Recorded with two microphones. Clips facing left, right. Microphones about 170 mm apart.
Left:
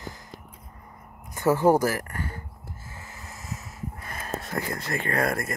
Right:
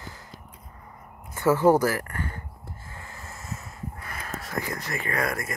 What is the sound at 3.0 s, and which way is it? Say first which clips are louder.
Vehicle: right 1 dB; 20° left (ahead or behind).